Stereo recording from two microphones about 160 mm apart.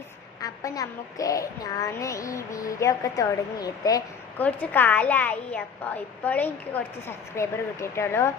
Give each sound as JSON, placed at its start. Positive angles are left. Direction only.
{"t": 0.4, "sound": "a woman's voice", "side_deg": 20}
{"t": 4.4, "sound": "a woman's voice", "side_deg": 10}